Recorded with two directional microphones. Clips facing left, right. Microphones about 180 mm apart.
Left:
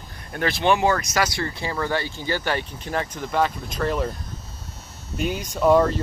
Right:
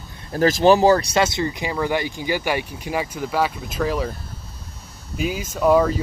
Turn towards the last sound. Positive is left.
turn(degrees=-10)  # may be behind; listen again after turning